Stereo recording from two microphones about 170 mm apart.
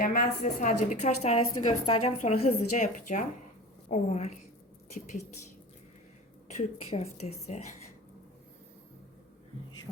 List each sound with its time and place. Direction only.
0.0 s a woman's voice: 50° left (ahead or behind)
6.6 s a woman's voice: 40° left (ahead or behind)